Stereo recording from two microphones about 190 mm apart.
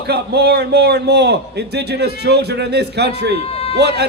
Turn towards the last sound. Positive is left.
turn(degrees=-60)  # may be behind; listen again after turning